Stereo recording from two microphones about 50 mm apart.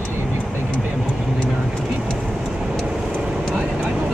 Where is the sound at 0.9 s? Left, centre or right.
Centre.